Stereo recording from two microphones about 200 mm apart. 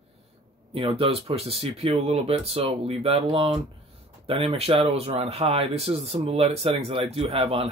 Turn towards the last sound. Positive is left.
turn(degrees=-30)  # may be behind; listen again after turning